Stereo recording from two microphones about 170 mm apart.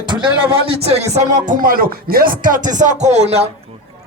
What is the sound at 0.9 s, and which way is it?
Speech, 40° right (ahead or behind).